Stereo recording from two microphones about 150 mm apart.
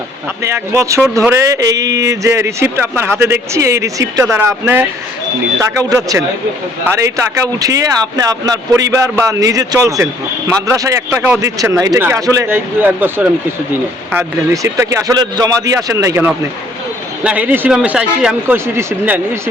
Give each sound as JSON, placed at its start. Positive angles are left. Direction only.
{"t": 0.4, "sound": "a man's voice", "side_deg": -20}
{"t": 18.5, "sound": "a man's voice", "side_deg": -15}